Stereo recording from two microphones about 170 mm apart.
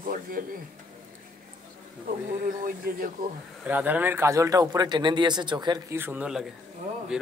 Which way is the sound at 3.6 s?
10° right (ahead or behind).